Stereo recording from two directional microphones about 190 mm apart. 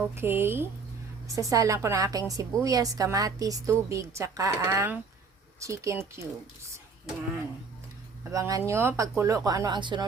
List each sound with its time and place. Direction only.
0.0 s a woman's voice: 10° right (ahead or behind)
8.3 s a woman's voice: 15° right (ahead or behind)